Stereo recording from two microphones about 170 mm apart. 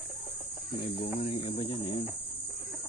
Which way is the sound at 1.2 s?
35° left (ahead or behind).